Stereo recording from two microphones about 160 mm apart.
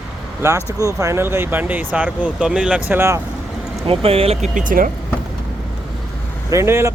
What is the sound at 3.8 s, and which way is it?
Speech, 35° right (ahead or behind).